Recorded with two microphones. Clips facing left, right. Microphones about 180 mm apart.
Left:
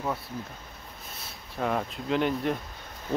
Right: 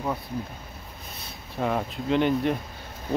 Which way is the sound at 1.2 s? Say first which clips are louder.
Right 2 dB; centre (ahead or behind).